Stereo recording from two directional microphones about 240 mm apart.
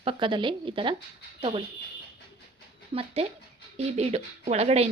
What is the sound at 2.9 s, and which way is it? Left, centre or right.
Speech, right.